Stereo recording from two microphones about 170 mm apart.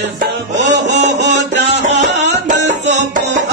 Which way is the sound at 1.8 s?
40° right (ahead or behind).